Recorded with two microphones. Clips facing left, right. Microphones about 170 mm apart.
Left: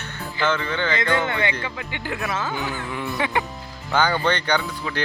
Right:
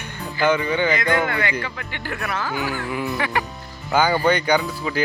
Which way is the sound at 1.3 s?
25° left (ahead or behind).